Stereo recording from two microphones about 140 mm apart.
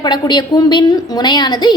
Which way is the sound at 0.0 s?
30° left (ahead or behind).